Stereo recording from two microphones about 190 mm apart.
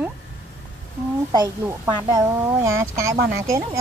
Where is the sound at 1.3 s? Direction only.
20° right (ahead or behind).